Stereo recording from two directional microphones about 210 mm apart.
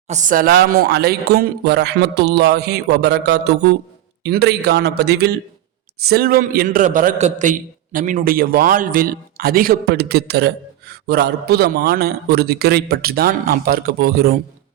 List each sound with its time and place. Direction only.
0.1 s a man's voice: 35° right (ahead or behind)